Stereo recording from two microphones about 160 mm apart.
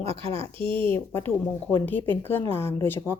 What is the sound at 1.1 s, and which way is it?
Speech, 10° left (ahead or behind).